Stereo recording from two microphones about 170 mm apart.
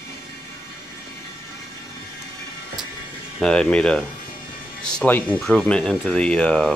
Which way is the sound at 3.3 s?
5° left (ahead or behind).